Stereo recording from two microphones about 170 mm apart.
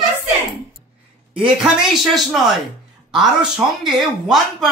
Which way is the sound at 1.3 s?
30° right (ahead or behind).